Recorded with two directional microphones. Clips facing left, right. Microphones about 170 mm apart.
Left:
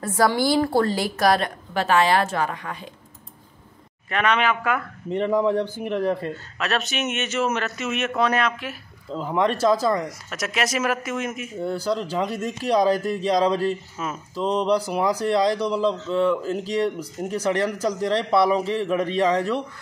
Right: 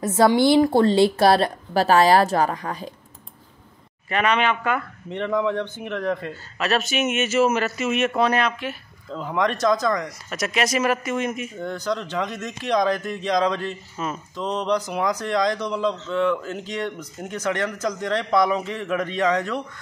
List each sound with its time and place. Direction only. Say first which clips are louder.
0.0 s a woman's voice: right 4 dB; 20° right (ahead or behind); by 2.9 s 40° right (ahead or behind)
4.1 s a man's voice: right 1 dB; centre (ahead or behind)
5.1 s a man's voice: left 3 dB; 35° left (ahead or behind)
6.6 s a man's voice: right 3 dB; centre (ahead or behind)
9.4 s a man's voice: left 1 dB; 30° left (ahead or behind)
10.0 s a man's voice: right 2 dB; centre (ahead or behind)
11.9 s a man's voice: even; 30° left (ahead or behind)
14.0 s a man's voice: right 1 dB; 5° left (ahead or behind)
14.3 s a man's voice: left 3 dB; 30° left (ahead or behind)